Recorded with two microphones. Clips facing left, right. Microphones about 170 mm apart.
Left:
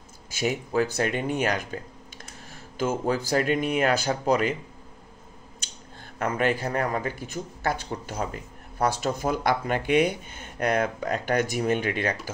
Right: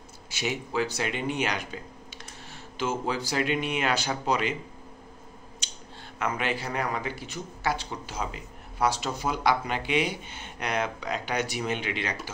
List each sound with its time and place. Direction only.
0.4 s a man's voice: 45° left (ahead or behind)
6.1 s a man's voice: 45° left (ahead or behind)